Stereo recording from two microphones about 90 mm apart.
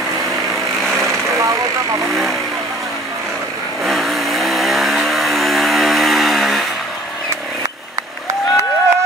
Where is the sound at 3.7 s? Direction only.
Centre (ahead or behind).